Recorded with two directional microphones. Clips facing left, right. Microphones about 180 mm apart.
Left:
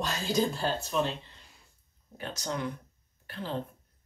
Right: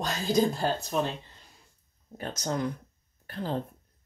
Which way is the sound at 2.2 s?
45° right (ahead or behind).